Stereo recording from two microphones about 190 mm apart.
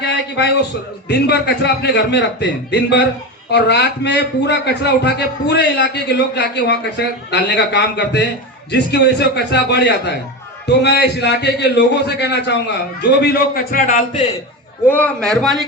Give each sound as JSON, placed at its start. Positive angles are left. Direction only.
{"t": 0.0, "sound": "a sound", "side_deg": 65}
{"t": 1.0, "sound": "a man's voice", "side_deg": 60}
{"t": 14.8, "sound": "a man's voice", "side_deg": 10}